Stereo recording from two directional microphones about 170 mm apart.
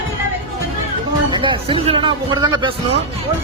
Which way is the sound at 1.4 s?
35° right (ahead or behind).